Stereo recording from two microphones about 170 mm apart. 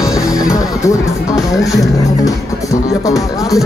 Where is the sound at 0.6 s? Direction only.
20° left (ahead or behind).